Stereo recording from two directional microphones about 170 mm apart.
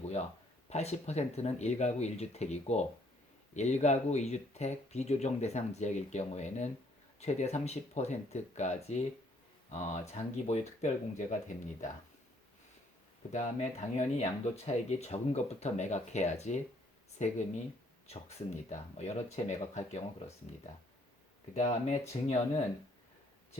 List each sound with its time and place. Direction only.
0.7 s speech: 40° left (ahead or behind)
13.3 s speech: 45° left (ahead or behind)
21.5 s speech: 40° left (ahead or behind)